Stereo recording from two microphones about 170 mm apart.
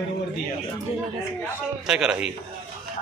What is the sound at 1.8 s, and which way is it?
Speech, 5° right (ahead or behind).